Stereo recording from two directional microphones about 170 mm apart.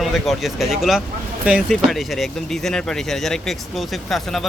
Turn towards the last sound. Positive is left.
turn(degrees=0)  # may be behind; listen again after turning